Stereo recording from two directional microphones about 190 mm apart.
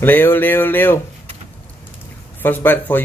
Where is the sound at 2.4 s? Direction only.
10° left (ahead or behind).